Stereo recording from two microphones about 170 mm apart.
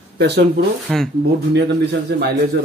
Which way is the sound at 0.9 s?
5° left (ahead or behind).